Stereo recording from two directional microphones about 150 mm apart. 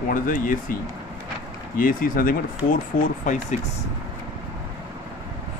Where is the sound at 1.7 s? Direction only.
70° left (ahead or behind).